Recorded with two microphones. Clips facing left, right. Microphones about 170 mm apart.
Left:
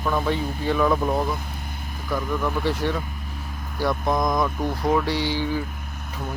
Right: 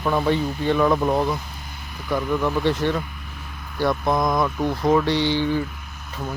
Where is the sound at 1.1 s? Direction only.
25° right (ahead or behind).